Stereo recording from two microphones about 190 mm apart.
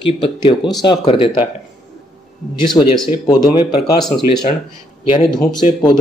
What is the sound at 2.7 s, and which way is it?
Speech, 25° left (ahead or behind).